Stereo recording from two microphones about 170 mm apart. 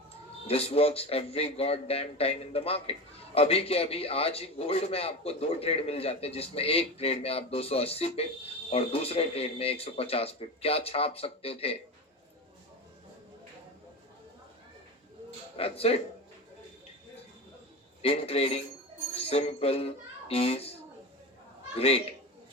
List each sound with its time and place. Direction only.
0.4 s a man's voice: 35° left (ahead or behind)
15.5 s a man's voice: 35° left (ahead or behind)
18.0 s a man's voice: 35° left (ahead or behind)
21.8 s a man's voice: 35° left (ahead or behind)